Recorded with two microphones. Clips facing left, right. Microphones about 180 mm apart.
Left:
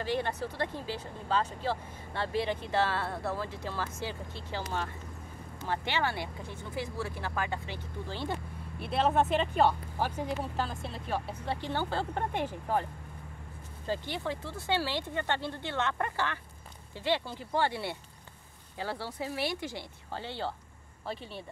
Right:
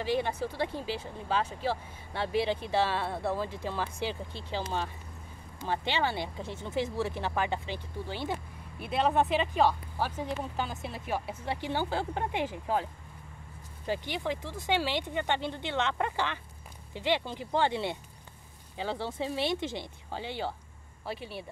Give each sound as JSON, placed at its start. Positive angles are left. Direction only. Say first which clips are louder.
{"t": 0.0, "sound": "speech", "louder": "right 2 dB", "side_deg": -10}
{"t": 8.8, "sound": "speech", "louder": "even", "side_deg": 0}
{"t": 9.9, "sound": "speech", "louder": "even", "side_deg": 10}
{"t": 10.6, "sound": "speech", "louder": "even", "side_deg": -5}
{"t": 13.8, "sound": "speech", "louder": "right 2 dB", "side_deg": -15}